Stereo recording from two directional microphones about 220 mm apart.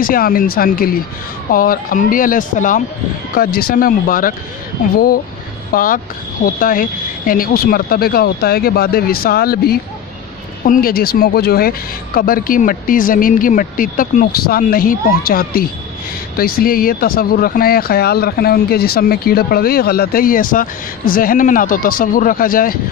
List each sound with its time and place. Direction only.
0.0 s speech: 40° left (ahead or behind)